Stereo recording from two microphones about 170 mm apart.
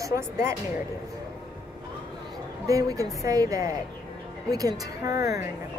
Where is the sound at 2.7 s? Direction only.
20° right (ahead or behind).